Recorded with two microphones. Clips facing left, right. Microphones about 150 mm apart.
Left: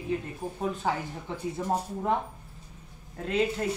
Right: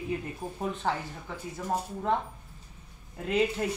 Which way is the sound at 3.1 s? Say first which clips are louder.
Even; 5° right (ahead or behind).